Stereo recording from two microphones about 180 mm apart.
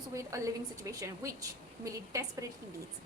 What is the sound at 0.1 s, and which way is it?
A woman's voice, 15° right (ahead or behind).